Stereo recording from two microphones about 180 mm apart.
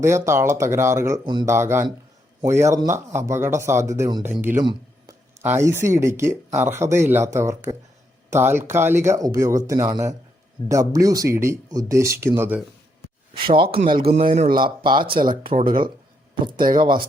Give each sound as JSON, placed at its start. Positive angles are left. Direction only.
{"t": 0.0, "sound": "speech", "side_deg": -15}
{"t": 13.4, "sound": "speech", "side_deg": -30}
{"t": 14.0, "sound": "speech", "side_deg": -50}
{"t": 14.6, "sound": "speech", "side_deg": -25}
{"t": 15.3, "sound": "speech", "side_deg": -50}
{"t": 16.6, "sound": "speech", "side_deg": -25}